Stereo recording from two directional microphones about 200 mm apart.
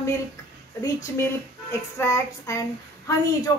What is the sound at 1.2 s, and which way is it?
A woman's voice, 15° left (ahead or behind).